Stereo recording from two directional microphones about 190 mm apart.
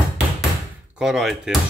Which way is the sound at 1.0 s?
Centre (ahead or behind).